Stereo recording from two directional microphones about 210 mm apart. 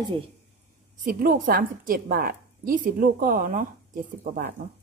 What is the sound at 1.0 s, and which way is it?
A woman's voice, 40° right (ahead or behind).